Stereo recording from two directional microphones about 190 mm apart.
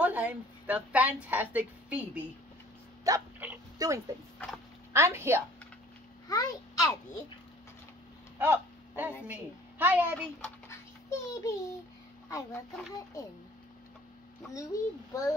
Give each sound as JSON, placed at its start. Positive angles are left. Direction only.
{"t": 0.0, "sound": "a woman's voice", "side_deg": -10}
{"t": 3.0, "sound": "dog", "side_deg": -15}
{"t": 4.9, "sound": "a woman's voice", "side_deg": -15}
{"t": 6.2, "sound": "a child's voice", "side_deg": 20}
{"t": 8.4, "sound": "a sound", "side_deg": -10}
{"t": 9.3, "sound": "a woman's voice", "side_deg": -10}
{"t": 10.4, "sound": "a sound", "side_deg": 15}
{"t": 12.3, "sound": "speech", "side_deg": 15}
{"t": 14.5, "sound": "speech", "side_deg": 15}